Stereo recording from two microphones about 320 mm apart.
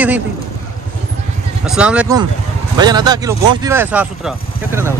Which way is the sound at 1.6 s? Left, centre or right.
Centre.